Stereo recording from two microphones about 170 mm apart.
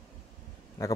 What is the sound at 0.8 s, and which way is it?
Speech, 20° left (ahead or behind).